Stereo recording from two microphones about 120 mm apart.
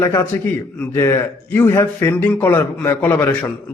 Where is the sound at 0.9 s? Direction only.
20° left (ahead or behind).